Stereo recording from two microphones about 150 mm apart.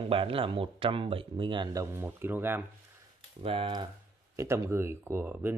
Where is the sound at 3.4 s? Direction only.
40° right (ahead or behind).